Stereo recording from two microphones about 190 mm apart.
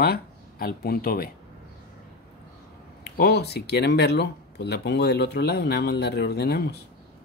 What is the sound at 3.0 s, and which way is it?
Speech, 60° left (ahead or behind).